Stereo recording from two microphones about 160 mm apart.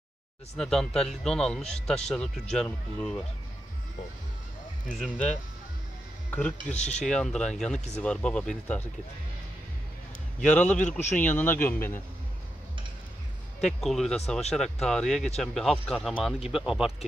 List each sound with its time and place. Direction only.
0.6 s speech: 5° left (ahead or behind)
4.9 s speech: 5° left (ahead or behind)
6.7 s speech: 45° left (ahead or behind)
7.1 s speech: 5° left (ahead or behind)
10.4 s speech: 10° left (ahead or behind)
13.7 s speech: centre (ahead or behind)